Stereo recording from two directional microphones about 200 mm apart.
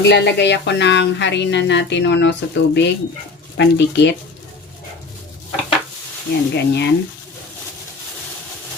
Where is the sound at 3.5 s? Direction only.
60° left (ahead or behind).